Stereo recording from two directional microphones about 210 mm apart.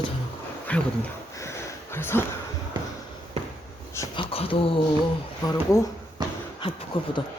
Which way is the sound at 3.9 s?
15° left (ahead or behind).